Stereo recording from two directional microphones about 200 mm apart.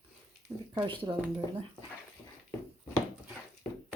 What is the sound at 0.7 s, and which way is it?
Speech, 25° right (ahead or behind).